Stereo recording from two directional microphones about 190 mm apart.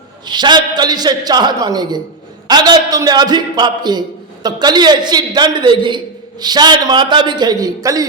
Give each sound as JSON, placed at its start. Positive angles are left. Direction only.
{"t": 0.3, "sound": "a man's voice", "side_deg": -25}